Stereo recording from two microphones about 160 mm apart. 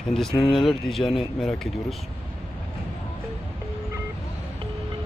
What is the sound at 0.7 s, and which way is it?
Speech, centre (ahead or behind).